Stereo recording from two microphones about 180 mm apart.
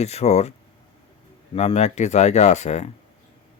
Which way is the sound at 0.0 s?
35° left (ahead or behind).